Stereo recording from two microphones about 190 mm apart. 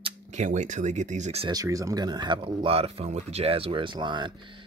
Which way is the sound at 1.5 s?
20° right (ahead or behind).